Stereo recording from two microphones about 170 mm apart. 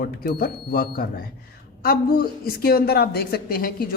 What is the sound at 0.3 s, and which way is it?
A woman's voice, 60° left (ahead or behind).